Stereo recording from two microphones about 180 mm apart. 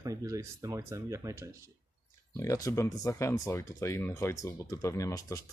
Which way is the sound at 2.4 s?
15° left (ahead or behind).